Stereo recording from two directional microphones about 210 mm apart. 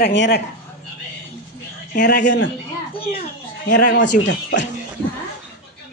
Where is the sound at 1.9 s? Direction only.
45° left (ahead or behind).